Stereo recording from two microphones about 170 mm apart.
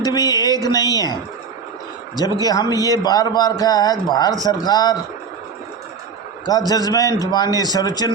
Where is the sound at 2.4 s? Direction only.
20° left (ahead or behind).